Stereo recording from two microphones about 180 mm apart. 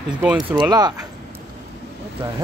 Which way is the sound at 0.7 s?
20° right (ahead or behind).